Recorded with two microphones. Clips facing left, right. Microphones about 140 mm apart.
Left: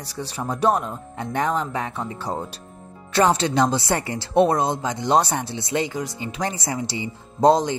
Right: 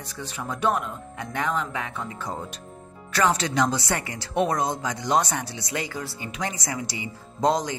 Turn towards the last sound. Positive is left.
turn(degrees=30)  # may be behind; listen again after turning